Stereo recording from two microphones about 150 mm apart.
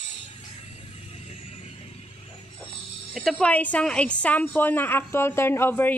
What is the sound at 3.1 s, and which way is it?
A woman's voice, centre (ahead or behind).